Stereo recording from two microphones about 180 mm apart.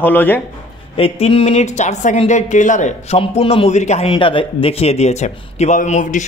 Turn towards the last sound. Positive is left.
turn(degrees=45)  # may be behind; listen again after turning